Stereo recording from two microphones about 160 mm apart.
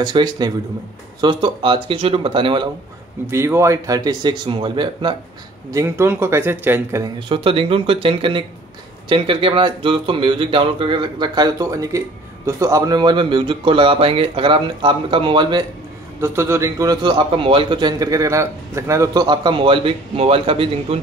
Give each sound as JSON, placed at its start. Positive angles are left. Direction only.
{"t": 0.0, "sound": "a man's voice", "side_deg": -25}
{"t": 3.3, "sound": "a man's voice", "side_deg": -15}
{"t": 5.7, "sound": "speech", "side_deg": -20}
{"t": 7.2, "sound": "speech", "side_deg": -35}
{"t": 16.2, "sound": "a man's voice", "side_deg": -15}